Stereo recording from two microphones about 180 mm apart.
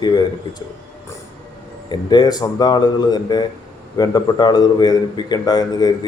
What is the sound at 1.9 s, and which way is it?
A man's voice, 25° left (ahead or behind).